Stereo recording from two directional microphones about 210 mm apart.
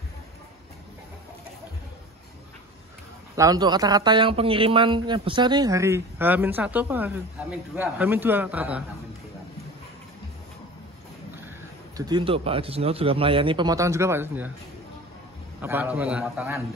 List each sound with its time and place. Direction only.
3.3 s a man's voice: 20° right (ahead or behind)
12.0 s a man's voice: 20° right (ahead or behind)
15.6 s a man's voice: 10° right (ahead or behind)